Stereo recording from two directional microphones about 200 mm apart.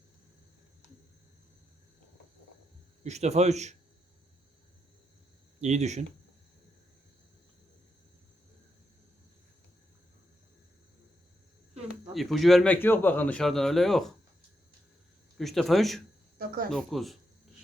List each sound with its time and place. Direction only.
3.0 s a man's voice: 35° right (ahead or behind)
5.5 s a man's voice: 35° right (ahead or behind)
12.1 s a man's voice: centre (ahead or behind)
15.4 s a man's voice: centre (ahead or behind)